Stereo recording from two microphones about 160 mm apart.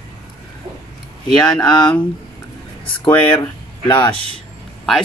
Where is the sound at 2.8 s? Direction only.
30° left (ahead or behind).